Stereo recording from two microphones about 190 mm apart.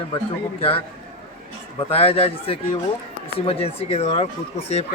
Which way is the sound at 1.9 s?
30° left (ahead or behind).